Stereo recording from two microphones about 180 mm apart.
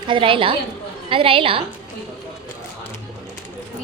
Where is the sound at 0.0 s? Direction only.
30° right (ahead or behind).